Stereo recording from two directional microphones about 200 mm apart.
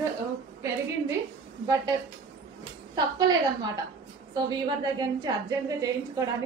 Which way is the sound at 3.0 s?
20° right (ahead or behind).